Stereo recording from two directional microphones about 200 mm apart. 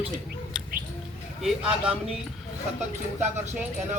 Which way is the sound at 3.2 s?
35° right (ahead or behind).